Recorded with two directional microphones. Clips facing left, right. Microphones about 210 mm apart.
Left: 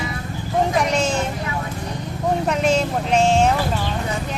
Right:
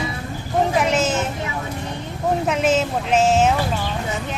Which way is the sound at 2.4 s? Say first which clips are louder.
Even; 5° right (ahead or behind).